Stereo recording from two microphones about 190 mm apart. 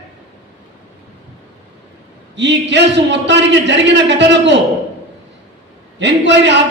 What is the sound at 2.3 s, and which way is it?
A man's voice, 70° right (ahead or behind).